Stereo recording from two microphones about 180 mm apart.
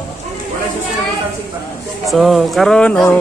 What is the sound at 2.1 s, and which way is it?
Speech, centre (ahead or behind).